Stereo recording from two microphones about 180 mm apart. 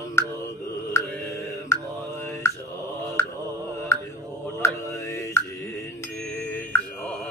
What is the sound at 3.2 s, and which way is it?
Mantra, 15° left (ahead or behind).